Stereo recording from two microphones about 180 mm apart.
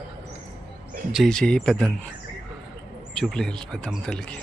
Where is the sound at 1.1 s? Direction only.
Centre (ahead or behind).